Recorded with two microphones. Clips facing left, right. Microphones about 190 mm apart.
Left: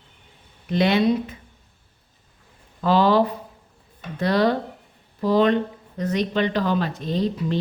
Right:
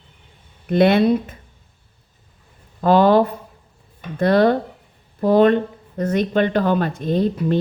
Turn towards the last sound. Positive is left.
turn(degrees=-55)  # may be behind; listen again after turning